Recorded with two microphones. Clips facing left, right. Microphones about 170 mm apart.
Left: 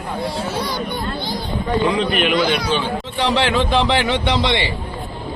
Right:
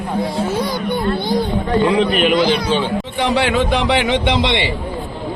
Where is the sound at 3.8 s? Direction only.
15° right (ahead or behind).